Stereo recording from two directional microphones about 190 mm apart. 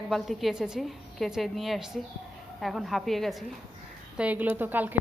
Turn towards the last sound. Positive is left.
turn(degrees=-10)  # may be behind; listen again after turning